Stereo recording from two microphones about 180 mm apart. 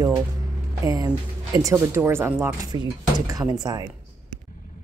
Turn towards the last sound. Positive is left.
turn(degrees=-20)  # may be behind; listen again after turning